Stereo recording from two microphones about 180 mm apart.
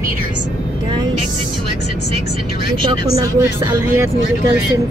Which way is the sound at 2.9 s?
25° right (ahead or behind).